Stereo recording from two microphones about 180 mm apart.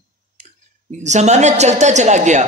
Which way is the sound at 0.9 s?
40° right (ahead or behind).